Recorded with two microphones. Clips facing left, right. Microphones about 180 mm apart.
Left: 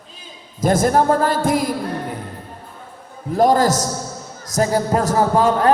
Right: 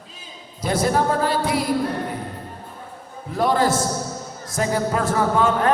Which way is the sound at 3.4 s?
40° left (ahead or behind).